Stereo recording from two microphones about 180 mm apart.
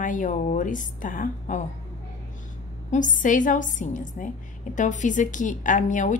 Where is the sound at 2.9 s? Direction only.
45° left (ahead or behind).